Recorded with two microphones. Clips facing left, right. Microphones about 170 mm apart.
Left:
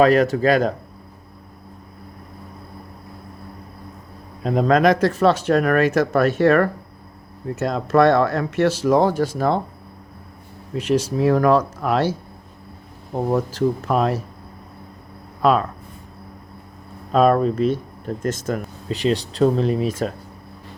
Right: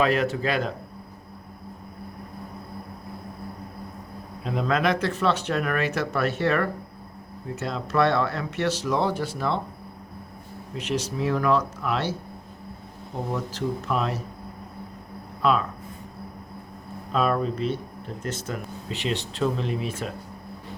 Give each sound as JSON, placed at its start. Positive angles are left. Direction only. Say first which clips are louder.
{"t": 0.0, "sound": "speech", "louder": "left 8 dB", "side_deg": 40}
{"t": 4.4, "sound": "speech", "louder": "left 8 dB", "side_deg": 45}
{"t": 10.8, "sound": "speech", "louder": "left 8 dB", "side_deg": 40}
{"t": 13.3, "sound": "speech", "louder": "left 8 dB", "side_deg": 45}
{"t": 15.4, "sound": "speech", "louder": "left 5 dB", "side_deg": 45}
{"t": 17.1, "sound": "speech", "louder": "left 8 dB", "side_deg": 45}